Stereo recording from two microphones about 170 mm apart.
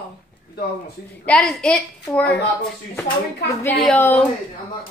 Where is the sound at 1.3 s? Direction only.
Centre (ahead or behind).